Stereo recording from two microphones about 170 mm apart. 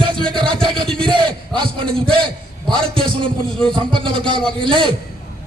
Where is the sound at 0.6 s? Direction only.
5° left (ahead or behind).